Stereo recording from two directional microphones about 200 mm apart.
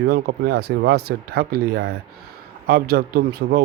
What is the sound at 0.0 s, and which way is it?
Speech, 50° right (ahead or behind).